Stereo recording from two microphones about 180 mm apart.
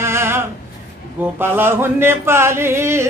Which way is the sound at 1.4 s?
10° right (ahead or behind).